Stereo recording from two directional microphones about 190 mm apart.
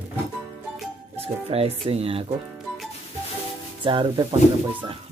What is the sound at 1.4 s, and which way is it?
Speech, 30° right (ahead or behind).